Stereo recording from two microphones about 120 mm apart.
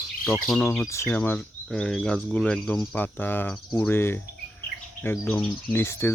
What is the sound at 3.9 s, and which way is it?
Speech, 20° left (ahead or behind).